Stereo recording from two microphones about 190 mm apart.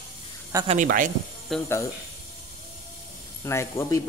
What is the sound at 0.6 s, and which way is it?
Speech, 40° right (ahead or behind).